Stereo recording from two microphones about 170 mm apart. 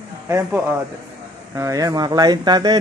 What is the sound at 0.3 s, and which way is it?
Speech, 15° right (ahead or behind).